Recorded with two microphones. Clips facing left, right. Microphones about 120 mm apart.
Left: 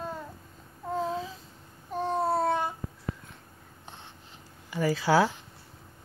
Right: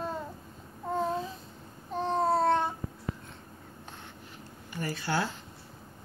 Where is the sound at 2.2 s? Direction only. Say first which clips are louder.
Right 3 dB; 5° left (ahead or behind).